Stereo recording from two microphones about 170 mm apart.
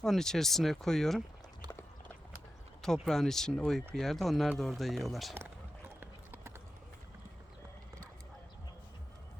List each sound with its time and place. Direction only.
0.0 s speech: 5° left (ahead or behind)
1.6 s a sound: 25° right (ahead or behind)
2.8 s speech: 5° left (ahead or behind)
6.0 s clip-clop: 10° right (ahead or behind)